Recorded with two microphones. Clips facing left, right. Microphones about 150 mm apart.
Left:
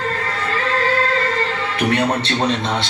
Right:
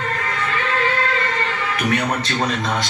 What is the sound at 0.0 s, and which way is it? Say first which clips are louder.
Music: left 1 dB; 35° left (ahead or behind).